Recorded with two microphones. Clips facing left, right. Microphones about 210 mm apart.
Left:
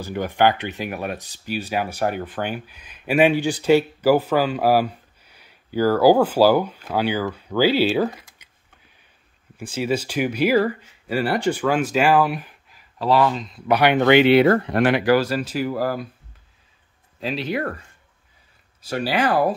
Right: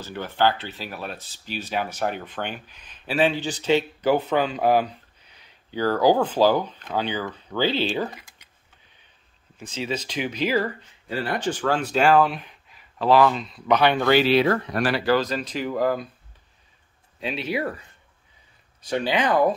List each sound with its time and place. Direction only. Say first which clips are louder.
0.0 s speech: left 4 dB; 15° left (ahead or behind)
9.6 s speech: left 6 dB; 10° left (ahead or behind)
13.7 s speech: left 3 dB; 15° left (ahead or behind)
17.2 s speech: left 2 dB; centre (ahead or behind)
18.9 s speech: left 1 dB; 5° left (ahead or behind)